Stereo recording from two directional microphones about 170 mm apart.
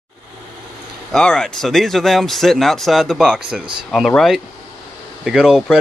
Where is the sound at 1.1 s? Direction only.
5° left (ahead or behind).